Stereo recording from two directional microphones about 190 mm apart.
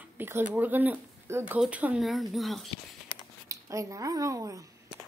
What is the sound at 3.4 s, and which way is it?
Speech, 15° right (ahead or behind).